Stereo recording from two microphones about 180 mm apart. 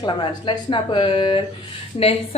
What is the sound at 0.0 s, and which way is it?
A woman's voice, 25° left (ahead or behind).